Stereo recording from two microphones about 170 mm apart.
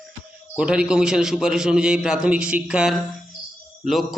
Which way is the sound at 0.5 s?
5° right (ahead or behind).